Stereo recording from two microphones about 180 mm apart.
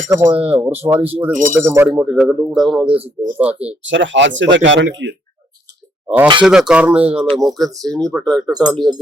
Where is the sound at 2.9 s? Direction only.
30° right (ahead or behind).